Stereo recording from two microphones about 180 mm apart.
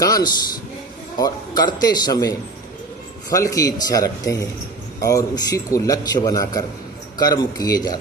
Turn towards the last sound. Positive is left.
turn(degrees=20)  # may be behind; listen again after turning